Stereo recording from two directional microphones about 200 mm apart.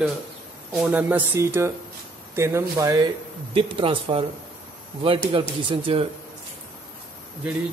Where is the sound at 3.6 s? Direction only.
25° right (ahead or behind).